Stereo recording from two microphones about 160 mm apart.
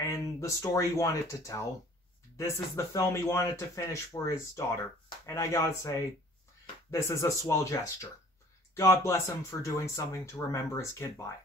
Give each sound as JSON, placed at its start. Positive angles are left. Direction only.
{"t": 0.0, "sound": "speech", "side_deg": 20}